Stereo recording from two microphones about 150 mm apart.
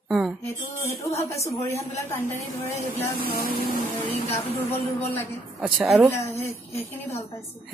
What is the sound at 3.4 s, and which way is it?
Music, 80° left.